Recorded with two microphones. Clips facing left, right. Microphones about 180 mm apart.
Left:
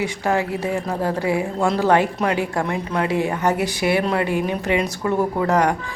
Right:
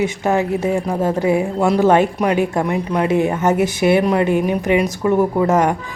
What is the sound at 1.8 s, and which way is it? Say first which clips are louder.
A woman's voice: right 4 dB; 20° right (ahead or behind).